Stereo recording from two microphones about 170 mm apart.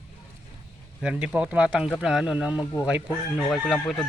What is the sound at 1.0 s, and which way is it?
Speech, 5° right (ahead or behind).